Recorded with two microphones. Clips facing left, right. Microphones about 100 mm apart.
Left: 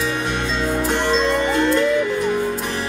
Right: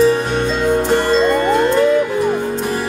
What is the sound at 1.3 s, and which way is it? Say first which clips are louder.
Music: right 4 dB; 45° right (ahead or behind).